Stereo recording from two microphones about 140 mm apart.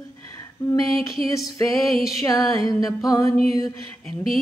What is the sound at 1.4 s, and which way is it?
Music, centre (ahead or behind).